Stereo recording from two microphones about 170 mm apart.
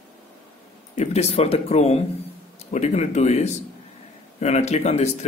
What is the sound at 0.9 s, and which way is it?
A man's voice, 40° left (ahead or behind).